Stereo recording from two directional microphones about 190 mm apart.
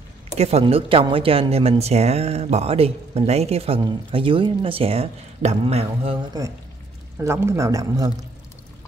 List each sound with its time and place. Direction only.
0.4 s speech: 35° right (ahead or behind)
7.2 s speech: 15° right (ahead or behind)